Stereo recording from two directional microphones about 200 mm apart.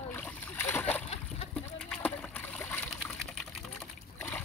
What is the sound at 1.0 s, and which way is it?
Boat, 30° left (ahead or behind).